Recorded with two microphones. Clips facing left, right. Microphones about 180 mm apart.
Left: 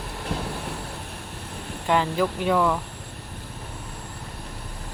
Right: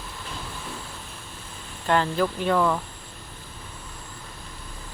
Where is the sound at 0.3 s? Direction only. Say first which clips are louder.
Left 8 dB; 65° left (ahead or behind).